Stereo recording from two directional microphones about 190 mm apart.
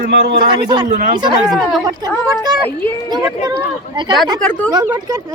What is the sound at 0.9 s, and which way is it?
Speech, 45° right (ahead or behind).